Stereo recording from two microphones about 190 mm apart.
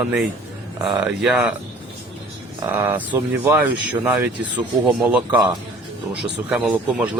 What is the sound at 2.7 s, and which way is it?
Speech, 10° right (ahead or behind).